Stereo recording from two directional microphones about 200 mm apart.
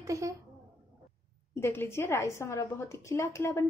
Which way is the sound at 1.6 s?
10° left (ahead or behind).